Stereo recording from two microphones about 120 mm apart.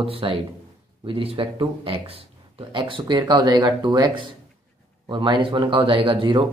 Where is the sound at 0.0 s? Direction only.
50° right (ahead or behind).